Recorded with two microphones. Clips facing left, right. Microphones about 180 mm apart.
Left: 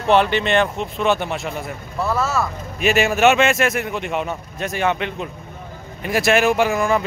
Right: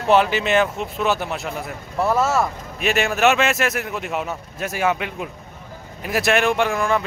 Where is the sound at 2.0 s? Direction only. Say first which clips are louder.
Right 2 dB; 25° right (ahead or behind).